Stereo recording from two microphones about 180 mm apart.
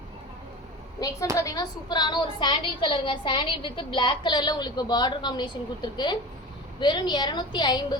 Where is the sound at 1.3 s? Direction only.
20° left (ahead or behind).